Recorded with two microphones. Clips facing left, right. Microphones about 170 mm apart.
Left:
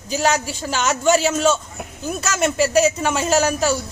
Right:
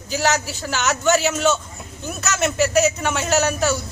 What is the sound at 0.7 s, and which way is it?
A man's voice, 30° left (ahead or behind).